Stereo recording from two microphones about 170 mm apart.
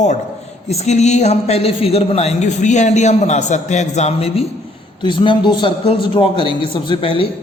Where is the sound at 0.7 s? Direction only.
40° left (ahead or behind).